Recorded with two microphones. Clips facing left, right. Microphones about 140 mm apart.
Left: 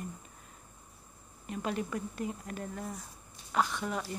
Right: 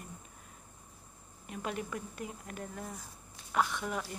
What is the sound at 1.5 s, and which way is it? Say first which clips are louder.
A woman's voice: left 3 dB; 5° right (ahead or behind).